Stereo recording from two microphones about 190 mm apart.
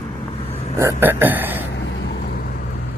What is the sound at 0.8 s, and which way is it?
Speech, 15° right (ahead or behind).